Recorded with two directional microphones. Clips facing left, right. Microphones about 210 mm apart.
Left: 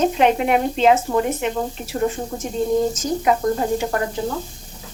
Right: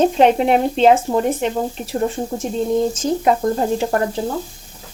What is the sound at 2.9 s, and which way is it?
Speech, 30° right (ahead or behind).